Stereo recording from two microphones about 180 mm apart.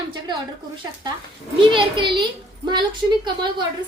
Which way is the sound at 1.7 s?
30° right (ahead or behind).